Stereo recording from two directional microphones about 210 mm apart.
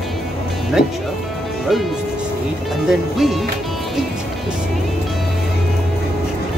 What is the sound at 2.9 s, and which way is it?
Speech, centre (ahead or behind).